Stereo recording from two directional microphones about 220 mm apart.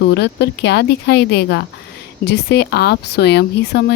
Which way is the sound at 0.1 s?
50° left (ahead or behind).